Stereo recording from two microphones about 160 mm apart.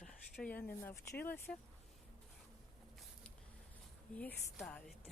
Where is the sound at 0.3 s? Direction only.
10° left (ahead or behind).